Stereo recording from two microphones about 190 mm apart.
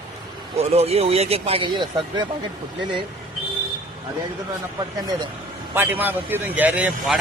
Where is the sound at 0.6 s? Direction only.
35° right (ahead or behind).